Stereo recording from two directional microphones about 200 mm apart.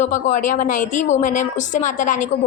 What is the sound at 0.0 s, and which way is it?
A woman's voice, 40° left (ahead or behind).